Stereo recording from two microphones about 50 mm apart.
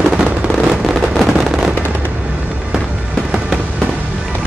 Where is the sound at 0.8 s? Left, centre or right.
Centre.